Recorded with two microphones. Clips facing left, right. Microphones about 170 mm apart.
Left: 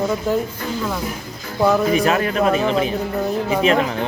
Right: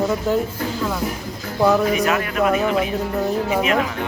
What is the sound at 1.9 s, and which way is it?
A man's voice, 30° left (ahead or behind).